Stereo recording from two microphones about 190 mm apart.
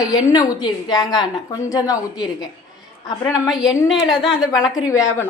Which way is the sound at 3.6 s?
15° left (ahead or behind).